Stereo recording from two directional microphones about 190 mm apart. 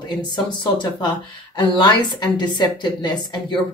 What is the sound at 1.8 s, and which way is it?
Speech, 20° left (ahead or behind).